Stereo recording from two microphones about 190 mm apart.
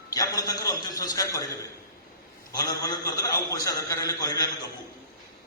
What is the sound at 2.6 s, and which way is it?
A man's voice, 20° left (ahead or behind).